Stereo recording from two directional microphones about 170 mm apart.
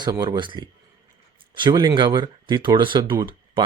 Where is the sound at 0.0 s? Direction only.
25° right (ahead or behind).